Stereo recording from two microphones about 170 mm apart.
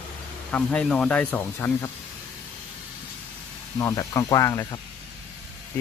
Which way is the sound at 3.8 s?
20° left (ahead or behind).